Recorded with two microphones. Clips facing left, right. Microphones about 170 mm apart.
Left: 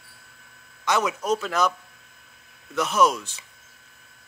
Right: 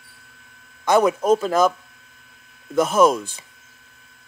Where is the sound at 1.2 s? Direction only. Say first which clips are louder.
Right 7 dB; 50° right (ahead or behind).